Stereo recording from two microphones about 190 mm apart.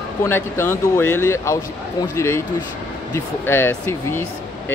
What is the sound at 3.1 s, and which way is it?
A man's voice, 15° left (ahead or behind).